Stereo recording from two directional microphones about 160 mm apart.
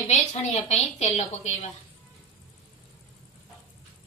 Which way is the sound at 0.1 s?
45° left (ahead or behind).